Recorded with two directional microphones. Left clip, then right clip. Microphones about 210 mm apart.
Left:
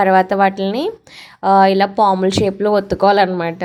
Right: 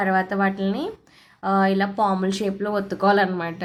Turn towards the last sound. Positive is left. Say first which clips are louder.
# left 7 dB
turn(degrees=30)  # may be behind; listen again after turning